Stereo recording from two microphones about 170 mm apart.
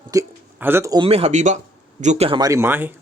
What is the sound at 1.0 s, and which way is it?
Speech, 35° right (ahead or behind).